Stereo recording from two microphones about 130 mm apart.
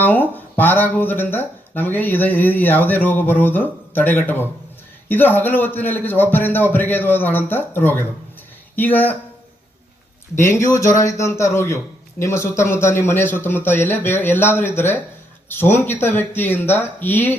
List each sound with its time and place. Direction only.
0.0 s speech: 15° left (ahead or behind)
10.7 s speech: 25° left (ahead or behind)